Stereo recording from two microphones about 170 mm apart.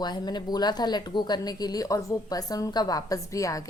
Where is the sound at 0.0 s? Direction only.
25° left (ahead or behind).